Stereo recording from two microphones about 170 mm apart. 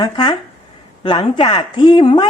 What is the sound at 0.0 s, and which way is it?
Speech, 25° left (ahead or behind).